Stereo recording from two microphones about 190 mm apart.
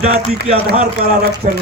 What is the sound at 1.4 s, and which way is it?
Speech, 40° right (ahead or behind).